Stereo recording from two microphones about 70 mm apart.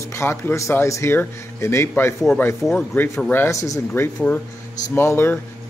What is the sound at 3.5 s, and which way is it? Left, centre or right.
Speech, left.